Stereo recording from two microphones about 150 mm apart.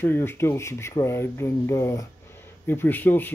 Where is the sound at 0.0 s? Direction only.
15° left (ahead or behind).